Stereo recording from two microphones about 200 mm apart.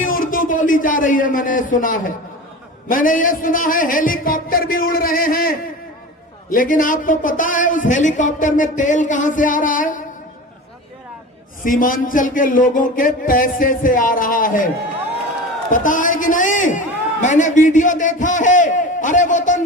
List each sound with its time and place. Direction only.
0.0 s a sound: 45° left (ahead or behind)
2.9 s a man's voice: 40° left (ahead or behind)
11.6 s speech: 45° left (ahead or behind)
15.7 s a man's voice: 40° left (ahead or behind)